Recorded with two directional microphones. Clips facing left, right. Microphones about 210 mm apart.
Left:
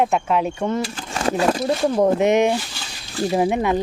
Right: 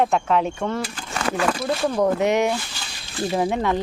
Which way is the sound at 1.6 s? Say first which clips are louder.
Left 3 dB; 20° left (ahead or behind).